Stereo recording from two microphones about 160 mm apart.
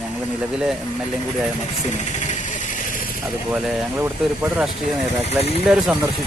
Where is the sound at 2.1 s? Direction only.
50° left (ahead or behind).